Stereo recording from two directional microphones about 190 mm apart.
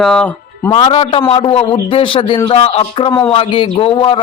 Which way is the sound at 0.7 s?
25° left (ahead or behind).